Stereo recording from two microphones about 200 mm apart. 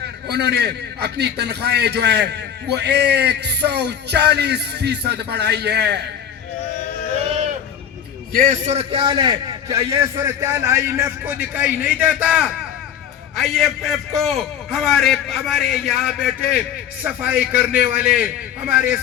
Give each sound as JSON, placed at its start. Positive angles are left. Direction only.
{"t": 0.0, "sound": "a man's voice", "side_deg": -55}
{"t": 8.3, "sound": "a man's voice", "side_deg": -40}